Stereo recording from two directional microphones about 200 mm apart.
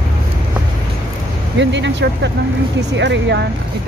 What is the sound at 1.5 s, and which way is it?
Speech, 65° right (ahead or behind).